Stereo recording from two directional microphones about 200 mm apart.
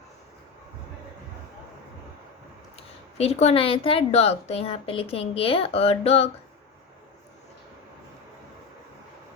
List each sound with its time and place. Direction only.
2.7 s speech: 30° left (ahead or behind)